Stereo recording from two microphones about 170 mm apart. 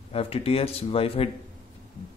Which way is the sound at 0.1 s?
35° left (ahead or behind).